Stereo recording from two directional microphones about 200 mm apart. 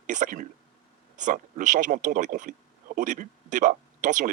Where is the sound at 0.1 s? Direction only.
40° right (ahead or behind).